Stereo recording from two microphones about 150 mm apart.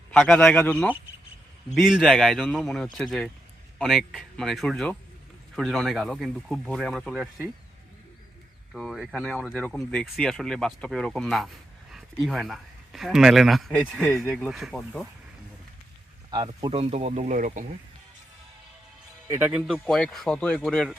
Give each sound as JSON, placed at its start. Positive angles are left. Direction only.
{"t": 0.1, "sound": "a man's voice", "side_deg": 5}
{"t": 1.7, "sound": "speech", "side_deg": 0}
{"t": 8.7, "sound": "speech", "side_deg": 0}
{"t": 16.3, "sound": "speech", "side_deg": -30}
{"t": 16.7, "sound": "speech", "side_deg": -40}
{"t": 19.3, "sound": "speech", "side_deg": -10}